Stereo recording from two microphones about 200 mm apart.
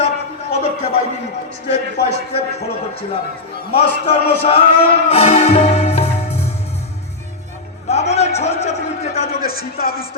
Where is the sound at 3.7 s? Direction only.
30° left (ahead or behind).